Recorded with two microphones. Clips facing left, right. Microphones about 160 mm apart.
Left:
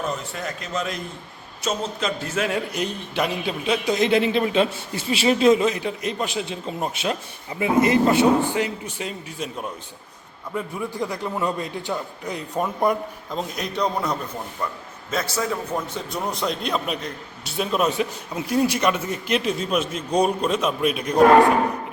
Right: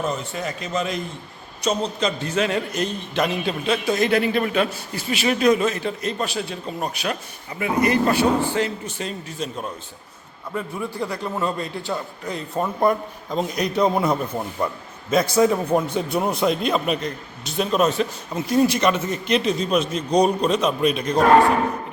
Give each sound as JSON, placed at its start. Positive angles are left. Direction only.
{"t": 0.0, "sound": "a man's voice", "side_deg": 0}
{"t": 13.3, "sound": "a man's voice", "side_deg": 0}
{"t": 15.1, "sound": "a man's voice", "side_deg": -15}
{"t": 16.4, "sound": "a man's voice", "side_deg": -5}